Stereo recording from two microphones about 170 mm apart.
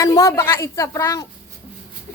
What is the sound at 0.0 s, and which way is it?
A woman's voice, 20° left (ahead or behind).